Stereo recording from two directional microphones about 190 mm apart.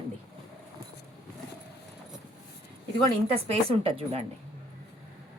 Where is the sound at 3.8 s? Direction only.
30° right (ahead or behind).